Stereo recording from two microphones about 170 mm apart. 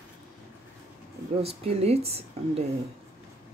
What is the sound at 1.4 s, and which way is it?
Speech, 35° right (ahead or behind).